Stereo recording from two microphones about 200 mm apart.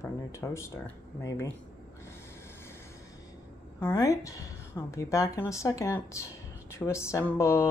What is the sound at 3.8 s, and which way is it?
A woman's voice, 15° left (ahead or behind).